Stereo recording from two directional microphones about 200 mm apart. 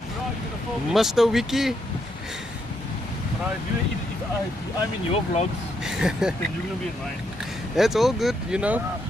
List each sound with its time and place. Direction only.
0.9 s speech: centre (ahead or behind)
5.1 s speech: 35° left (ahead or behind)
5.9 s speech: 5° right (ahead or behind)
7.7 s speech: centre (ahead or behind)